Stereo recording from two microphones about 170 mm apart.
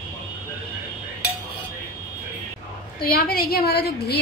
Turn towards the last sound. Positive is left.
turn(degrees=70)  # may be behind; listen again after turning